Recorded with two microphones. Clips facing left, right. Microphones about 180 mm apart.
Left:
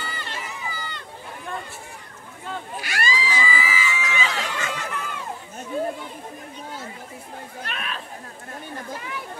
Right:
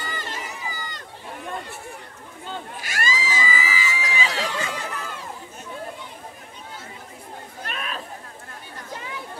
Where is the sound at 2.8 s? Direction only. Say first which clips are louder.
Left 1 dB; 45° right (ahead or behind).